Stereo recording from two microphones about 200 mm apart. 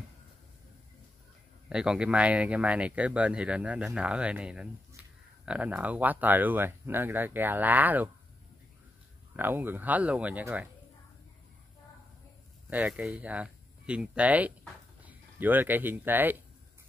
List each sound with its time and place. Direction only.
1.7 s speech: 5° right (ahead or behind)
9.4 s speech: 10° right (ahead or behind)
12.6 s speech: 10° right (ahead or behind)